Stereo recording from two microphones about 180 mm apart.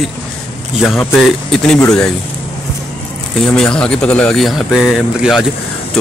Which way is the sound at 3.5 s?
5° left (ahead or behind).